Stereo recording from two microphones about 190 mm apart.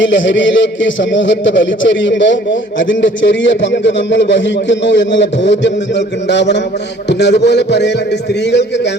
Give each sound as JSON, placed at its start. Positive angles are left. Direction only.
{"t": 0.0, "sound": "a man's voice", "side_deg": 75}